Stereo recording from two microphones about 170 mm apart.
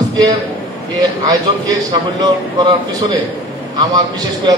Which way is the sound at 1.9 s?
25° right (ahead or behind).